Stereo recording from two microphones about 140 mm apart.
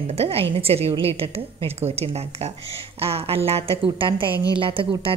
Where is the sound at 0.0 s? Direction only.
45° right (ahead or behind).